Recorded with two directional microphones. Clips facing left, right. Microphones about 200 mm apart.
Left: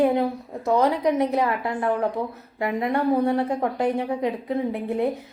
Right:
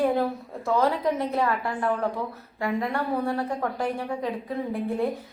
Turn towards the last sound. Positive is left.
turn(degrees=20)  # may be behind; listen again after turning